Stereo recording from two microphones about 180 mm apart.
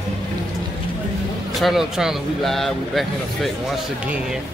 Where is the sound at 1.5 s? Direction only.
Centre (ahead or behind).